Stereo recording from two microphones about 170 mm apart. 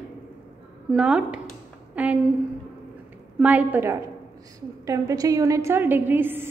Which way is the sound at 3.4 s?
10° right (ahead or behind).